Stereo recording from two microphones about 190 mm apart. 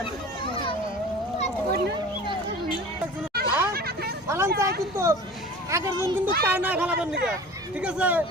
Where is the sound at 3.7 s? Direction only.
55° right (ahead or behind).